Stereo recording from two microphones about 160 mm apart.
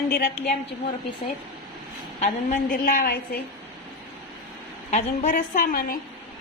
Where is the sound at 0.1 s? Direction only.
65° left (ahead or behind).